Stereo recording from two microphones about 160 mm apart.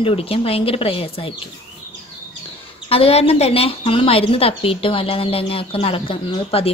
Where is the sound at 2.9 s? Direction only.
35° left (ahead or behind).